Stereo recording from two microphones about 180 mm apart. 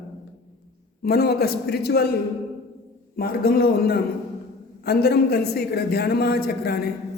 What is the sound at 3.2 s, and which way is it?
A man's voice, 60° left (ahead or behind).